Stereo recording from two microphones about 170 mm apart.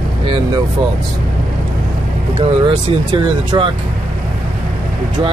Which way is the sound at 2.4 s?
30° right (ahead or behind).